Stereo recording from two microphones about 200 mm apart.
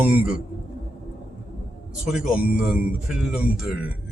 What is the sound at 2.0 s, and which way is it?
Speech, 5° right (ahead or behind).